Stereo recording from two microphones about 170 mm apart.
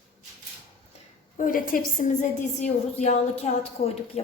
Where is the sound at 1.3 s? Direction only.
55° left (ahead or behind).